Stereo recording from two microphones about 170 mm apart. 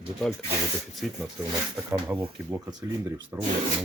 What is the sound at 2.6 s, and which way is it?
Speech, 20° right (ahead or behind).